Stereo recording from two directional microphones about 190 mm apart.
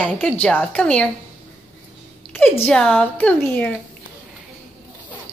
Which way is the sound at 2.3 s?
10° left (ahead or behind).